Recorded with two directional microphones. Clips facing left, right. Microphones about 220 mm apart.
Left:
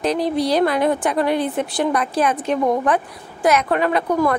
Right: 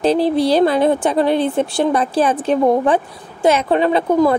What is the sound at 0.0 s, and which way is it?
Speech, 30° right (ahead or behind).